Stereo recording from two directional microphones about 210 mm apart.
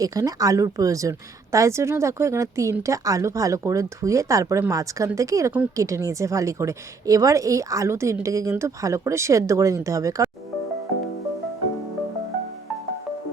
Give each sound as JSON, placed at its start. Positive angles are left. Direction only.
{"t": 0.0, "sound": "a woman's voice", "side_deg": -15}